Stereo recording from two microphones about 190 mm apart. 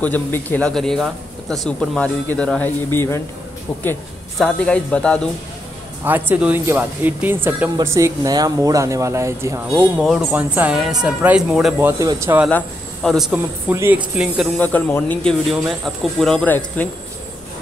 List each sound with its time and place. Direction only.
0.0 s speech: 10° left (ahead or behind)
4.4 s speech: 5° left (ahead or behind)
6.0 s speech: 10° right (ahead or behind)
12.0 s speech: 15° right (ahead or behind)
12.4 s speech: 5° left (ahead or behind)
14.6 s speech: 10° left (ahead or behind)